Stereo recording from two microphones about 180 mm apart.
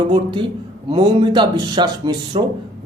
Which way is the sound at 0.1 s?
25° right (ahead or behind).